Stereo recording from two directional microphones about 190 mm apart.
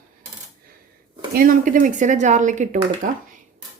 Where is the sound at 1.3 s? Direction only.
45° right (ahead or behind).